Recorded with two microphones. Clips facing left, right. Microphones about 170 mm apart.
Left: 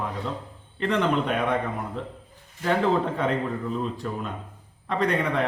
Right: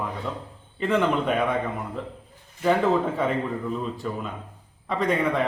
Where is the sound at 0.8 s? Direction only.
5° right (ahead or behind).